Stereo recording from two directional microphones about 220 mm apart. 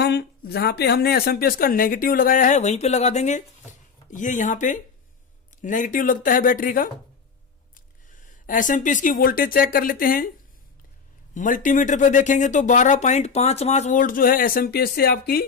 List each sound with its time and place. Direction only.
0.0 s speech: 50° left (ahead or behind)
8.2 s speech: 35° left (ahead or behind)
11.3 s speech: 35° left (ahead or behind)